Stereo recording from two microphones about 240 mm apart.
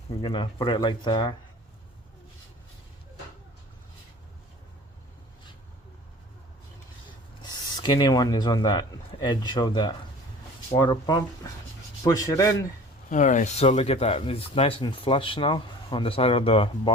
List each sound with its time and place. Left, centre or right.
0.2 s speech: left
7.4 s speech: centre
13.1 s speech: left